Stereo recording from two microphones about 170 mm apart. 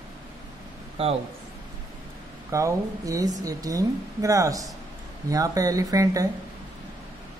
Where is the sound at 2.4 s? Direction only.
20° right (ahead or behind).